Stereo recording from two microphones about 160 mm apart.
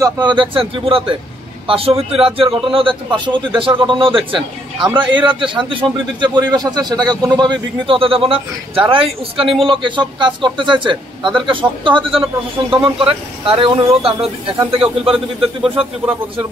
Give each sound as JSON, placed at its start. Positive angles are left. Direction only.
{"t": 0.0, "sound": "a man's voice", "side_deg": -30}
{"t": 15.0, "sound": "a man's voice", "side_deg": -5}